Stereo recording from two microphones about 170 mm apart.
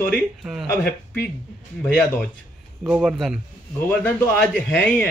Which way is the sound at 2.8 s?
10° right (ahead or behind).